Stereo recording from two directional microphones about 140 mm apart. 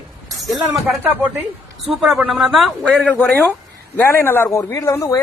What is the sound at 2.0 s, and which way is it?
Speech, 10° right (ahead or behind).